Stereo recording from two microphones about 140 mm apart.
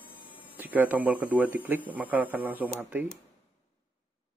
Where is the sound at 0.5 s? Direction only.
15° right (ahead or behind).